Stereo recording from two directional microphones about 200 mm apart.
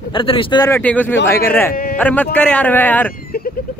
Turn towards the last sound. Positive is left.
turn(degrees=10)  # may be behind; listen again after turning